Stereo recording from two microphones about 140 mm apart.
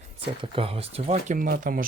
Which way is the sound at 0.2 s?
40° right (ahead or behind).